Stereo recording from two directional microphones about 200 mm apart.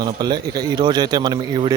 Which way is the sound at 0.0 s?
20° right (ahead or behind).